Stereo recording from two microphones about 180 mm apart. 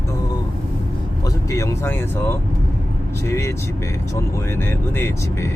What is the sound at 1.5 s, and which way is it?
Speech, 15° left (ahead or behind).